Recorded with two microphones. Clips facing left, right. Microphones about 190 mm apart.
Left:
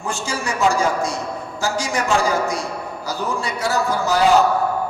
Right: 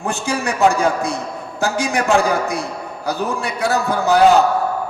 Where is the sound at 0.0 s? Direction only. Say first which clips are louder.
Right 4 dB; 60° right (ahead or behind).